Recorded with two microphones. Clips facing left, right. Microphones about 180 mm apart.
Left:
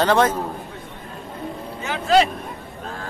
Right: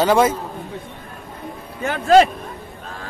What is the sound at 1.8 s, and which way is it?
Vehicle, 50° right (ahead or behind).